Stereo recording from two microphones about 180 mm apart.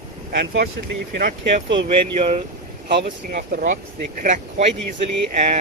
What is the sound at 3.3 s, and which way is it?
Speech, 55° right (ahead or behind).